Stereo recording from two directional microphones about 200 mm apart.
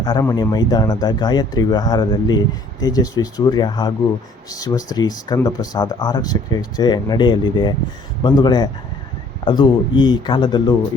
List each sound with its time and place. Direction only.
0.0 s speech: 20° left (ahead or behind)